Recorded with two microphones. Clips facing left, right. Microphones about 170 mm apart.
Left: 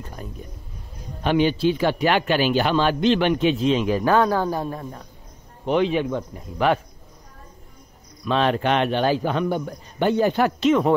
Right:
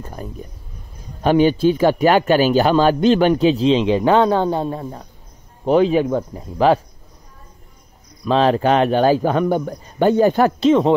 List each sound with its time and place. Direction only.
0.0 s a man's voice: 45° right (ahead or behind); by 5.0 s 25° right (ahead or behind)
5.7 s a man's voice: 40° right (ahead or behind)
8.3 s a man's voice: 35° right (ahead or behind)